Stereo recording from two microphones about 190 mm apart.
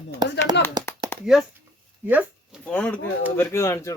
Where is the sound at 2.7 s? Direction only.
5° left (ahead or behind).